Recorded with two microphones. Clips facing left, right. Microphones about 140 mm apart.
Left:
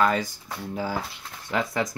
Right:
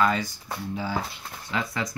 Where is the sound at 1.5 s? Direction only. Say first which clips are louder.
Left 4 dB; 50° left (ahead or behind).